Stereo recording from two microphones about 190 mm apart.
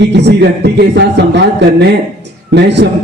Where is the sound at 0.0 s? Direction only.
65° right (ahead or behind).